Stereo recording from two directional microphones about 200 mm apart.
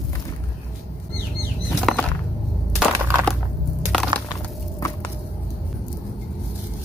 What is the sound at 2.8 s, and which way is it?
Crushing, 5° right (ahead or behind).